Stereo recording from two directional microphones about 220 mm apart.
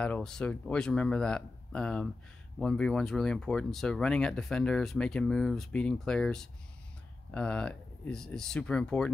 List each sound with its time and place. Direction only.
0.0 s speech: 5° left (ahead or behind)